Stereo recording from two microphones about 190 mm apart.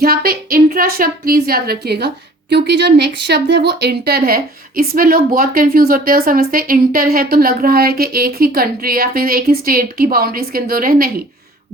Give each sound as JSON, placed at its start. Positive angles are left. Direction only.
{"t": 0.0, "sound": "a woman's voice", "side_deg": -50}